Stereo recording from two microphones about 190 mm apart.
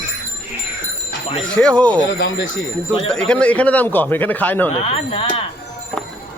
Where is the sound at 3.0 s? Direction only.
5° left (ahead or behind).